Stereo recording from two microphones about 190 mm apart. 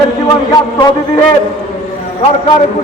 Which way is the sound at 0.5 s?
20° left (ahead or behind).